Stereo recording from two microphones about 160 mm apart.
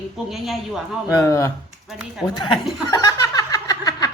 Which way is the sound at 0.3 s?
Centre (ahead or behind).